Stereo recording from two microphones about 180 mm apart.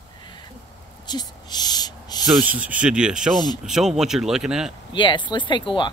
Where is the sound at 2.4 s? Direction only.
10° right (ahead or behind).